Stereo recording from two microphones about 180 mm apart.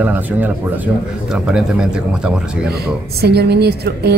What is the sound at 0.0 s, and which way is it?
Speech, 10° right (ahead or behind).